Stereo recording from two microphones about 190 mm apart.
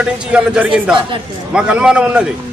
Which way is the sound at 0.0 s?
5° right (ahead or behind).